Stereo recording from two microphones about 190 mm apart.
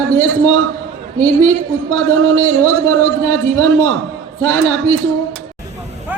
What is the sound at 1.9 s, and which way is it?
A man's voice, 10° left (ahead or behind).